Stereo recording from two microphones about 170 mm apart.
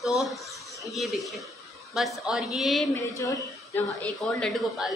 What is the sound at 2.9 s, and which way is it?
Speech, 20° left (ahead or behind).